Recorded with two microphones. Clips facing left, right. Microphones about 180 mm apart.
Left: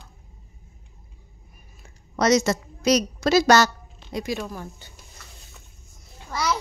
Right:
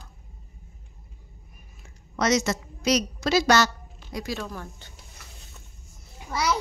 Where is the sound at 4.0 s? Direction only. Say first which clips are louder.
Left 3 dB; 25° left (ahead or behind).